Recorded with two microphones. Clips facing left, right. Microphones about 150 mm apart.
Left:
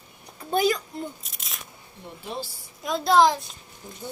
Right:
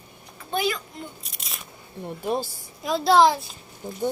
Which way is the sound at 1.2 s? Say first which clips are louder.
Right 2 dB; centre (ahead or behind).